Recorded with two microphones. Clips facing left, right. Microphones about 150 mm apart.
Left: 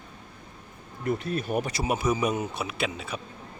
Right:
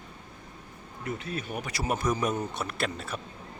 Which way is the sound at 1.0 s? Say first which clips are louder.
Left 6 dB; 40° left (ahead or behind).